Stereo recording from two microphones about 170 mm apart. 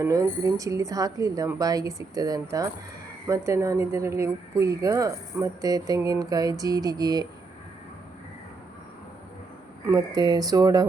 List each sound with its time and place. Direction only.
0.0 s speech: 15° right (ahead or behind)
9.8 s speech: 20° right (ahead or behind)